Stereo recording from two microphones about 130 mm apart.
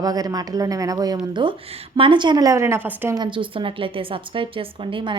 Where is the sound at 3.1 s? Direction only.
35° right (ahead or behind).